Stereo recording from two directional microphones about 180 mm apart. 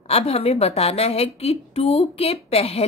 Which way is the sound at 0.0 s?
35° left (ahead or behind).